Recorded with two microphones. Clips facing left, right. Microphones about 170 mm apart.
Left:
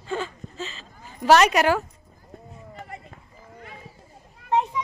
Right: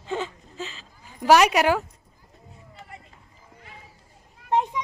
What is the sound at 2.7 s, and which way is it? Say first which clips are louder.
Run: left 5 dB; 50° left (ahead or behind).